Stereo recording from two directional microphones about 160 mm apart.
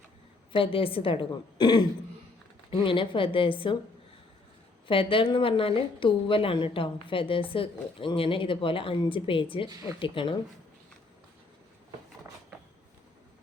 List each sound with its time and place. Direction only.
0.5 s speech: 35° left (ahead or behind)
4.9 s speech: 35° left (ahead or behind)